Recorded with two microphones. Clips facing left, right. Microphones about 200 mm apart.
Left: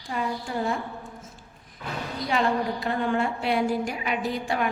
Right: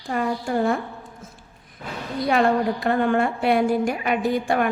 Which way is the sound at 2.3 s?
60° right (ahead or behind).